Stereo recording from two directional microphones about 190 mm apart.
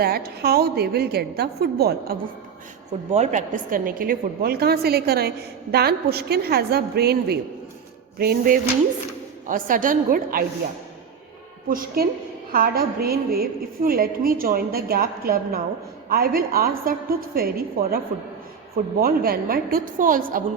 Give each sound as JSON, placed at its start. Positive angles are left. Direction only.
{"t": 0.0, "sound": "a woman's voice", "side_deg": -55}
{"t": 3.1, "sound": "a woman's voice", "side_deg": -40}
{"t": 11.7, "sound": "a woman's voice", "side_deg": -50}